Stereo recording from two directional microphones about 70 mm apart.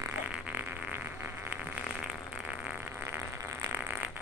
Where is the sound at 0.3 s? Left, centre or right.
Right.